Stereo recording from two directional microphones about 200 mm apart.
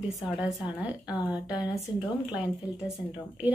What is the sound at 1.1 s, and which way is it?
Speech, 20° left (ahead or behind).